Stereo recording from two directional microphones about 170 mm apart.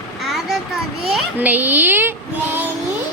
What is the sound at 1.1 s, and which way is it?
Speech, 10° right (ahead or behind).